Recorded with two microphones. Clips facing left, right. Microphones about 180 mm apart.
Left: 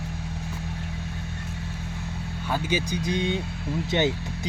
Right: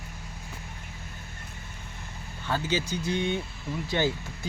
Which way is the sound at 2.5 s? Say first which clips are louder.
Left 2 dB; 10° left (ahead or behind).